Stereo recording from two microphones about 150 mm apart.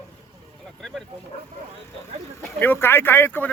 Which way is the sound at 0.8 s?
Centre (ahead or behind).